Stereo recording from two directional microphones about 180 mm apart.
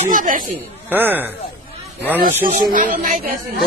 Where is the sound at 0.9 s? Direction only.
10° right (ahead or behind).